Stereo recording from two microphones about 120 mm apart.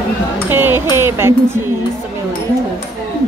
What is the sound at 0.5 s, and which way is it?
Music, 15° right (ahead or behind).